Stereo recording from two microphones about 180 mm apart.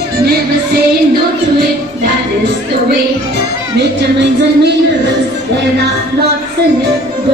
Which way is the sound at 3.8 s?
70° right (ahead or behind).